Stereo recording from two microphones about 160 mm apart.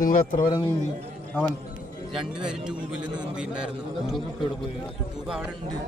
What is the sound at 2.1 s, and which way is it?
A man's voice, 5° right (ahead or behind).